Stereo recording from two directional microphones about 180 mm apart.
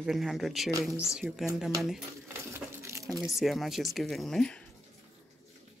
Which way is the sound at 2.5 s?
15° right (ahead or behind).